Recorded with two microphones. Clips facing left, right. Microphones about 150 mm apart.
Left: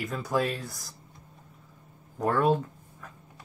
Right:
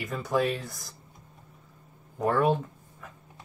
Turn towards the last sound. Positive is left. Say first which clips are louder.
# left 1 dB
turn(degrees=0)  # may be behind; listen again after turning